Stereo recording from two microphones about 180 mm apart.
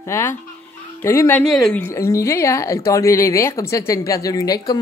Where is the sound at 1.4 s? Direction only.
Centre (ahead or behind).